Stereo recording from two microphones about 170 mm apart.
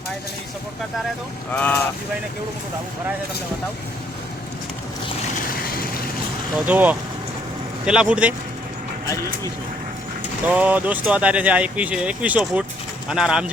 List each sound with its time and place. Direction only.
1.5 s speech: 5° left (ahead or behind)
5.5 s vehicle: 60° left (ahead or behind)
6.7 s speech: 10° right (ahead or behind)
10.5 s speech: 10° right (ahead or behind)